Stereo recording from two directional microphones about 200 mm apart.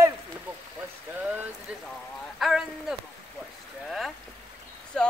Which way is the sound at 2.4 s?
Centre (ahead or behind).